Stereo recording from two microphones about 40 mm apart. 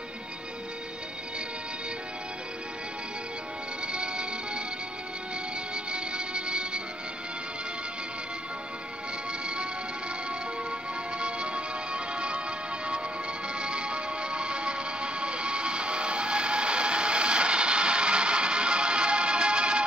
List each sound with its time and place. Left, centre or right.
3.8 s music: right
5.9 s music: right
11.1 s music: right